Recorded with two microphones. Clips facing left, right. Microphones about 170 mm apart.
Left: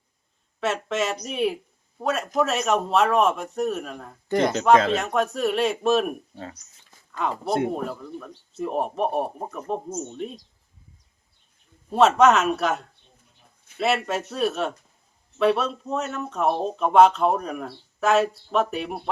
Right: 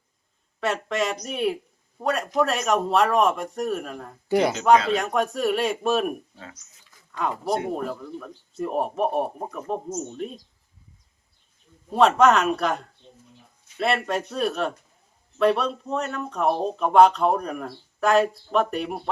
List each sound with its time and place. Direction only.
0.6 s speech: centre (ahead or behind)
6.3 s speech: 35° left (ahead or behind)
7.1 s speech: centre (ahead or behind)
11.9 s speech: centre (ahead or behind)